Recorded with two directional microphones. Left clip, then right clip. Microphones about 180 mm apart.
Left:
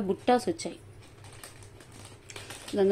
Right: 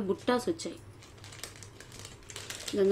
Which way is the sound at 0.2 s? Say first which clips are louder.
Left 4 dB; 15° left (ahead or behind).